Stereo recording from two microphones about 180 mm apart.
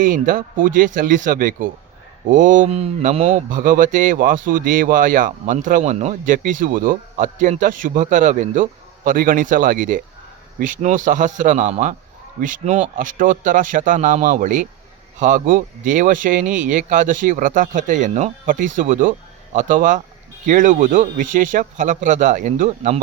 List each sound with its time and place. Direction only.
0.0 s speech: 50° right (ahead or behind)
3.5 s speech: 50° right (ahead or behind)